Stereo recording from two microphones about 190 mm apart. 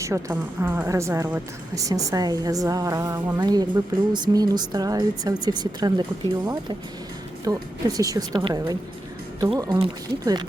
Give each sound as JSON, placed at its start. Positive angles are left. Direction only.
{"t": 0.0, "sound": "a woman's voice", "side_deg": -15}